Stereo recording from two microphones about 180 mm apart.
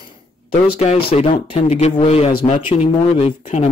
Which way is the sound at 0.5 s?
35° left (ahead or behind).